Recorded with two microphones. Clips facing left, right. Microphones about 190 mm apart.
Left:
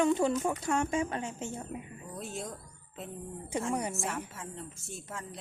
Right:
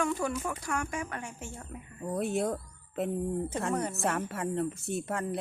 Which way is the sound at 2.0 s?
60° right (ahead or behind).